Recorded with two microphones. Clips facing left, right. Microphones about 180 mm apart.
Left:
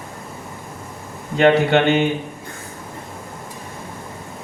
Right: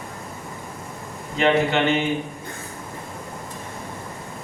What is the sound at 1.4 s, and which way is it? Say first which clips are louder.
Speech: left 5 dB; 65° left (ahead or behind).